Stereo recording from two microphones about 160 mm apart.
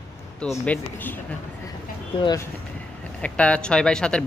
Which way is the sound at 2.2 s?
20° left (ahead or behind).